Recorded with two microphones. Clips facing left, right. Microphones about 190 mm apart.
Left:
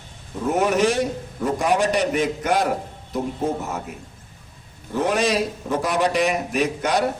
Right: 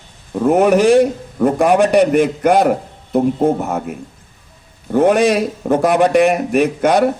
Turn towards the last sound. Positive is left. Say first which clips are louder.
# right 8 dB
turn(degrees=-55)  # may be behind; listen again after turning